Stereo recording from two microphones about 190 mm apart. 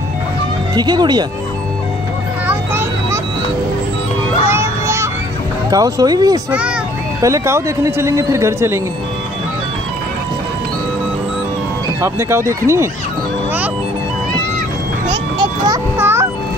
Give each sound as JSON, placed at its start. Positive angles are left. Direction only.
{"t": 0.7, "sound": "speech", "side_deg": -20}
{"t": 2.4, "sound": "a sound", "side_deg": -10}
{"t": 4.5, "sound": "a sound", "side_deg": -15}
{"t": 5.7, "sound": "a man's voice", "side_deg": -20}
{"t": 12.0, "sound": "a man's voice", "side_deg": -15}
{"t": 15.3, "sound": "music", "side_deg": -20}